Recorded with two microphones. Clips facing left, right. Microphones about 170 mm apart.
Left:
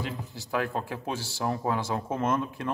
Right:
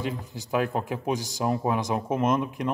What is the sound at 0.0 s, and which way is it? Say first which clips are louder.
Speech: right 4 dB; 20° right (ahead or behind).